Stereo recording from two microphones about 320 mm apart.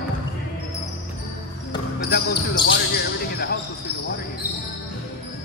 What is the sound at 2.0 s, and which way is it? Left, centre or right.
Speech, left.